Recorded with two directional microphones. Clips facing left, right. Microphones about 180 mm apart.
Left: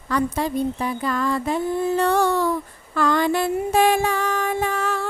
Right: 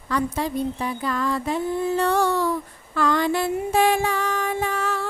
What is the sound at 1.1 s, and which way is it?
Music, 50° left (ahead or behind).